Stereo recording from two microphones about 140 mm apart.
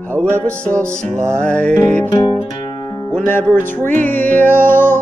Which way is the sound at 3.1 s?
15° left (ahead or behind).